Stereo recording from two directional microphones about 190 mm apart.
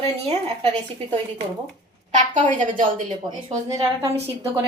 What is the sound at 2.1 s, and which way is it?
A woman's voice, 40° right (ahead or behind).